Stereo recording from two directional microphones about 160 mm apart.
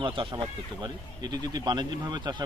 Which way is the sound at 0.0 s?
30° right (ahead or behind).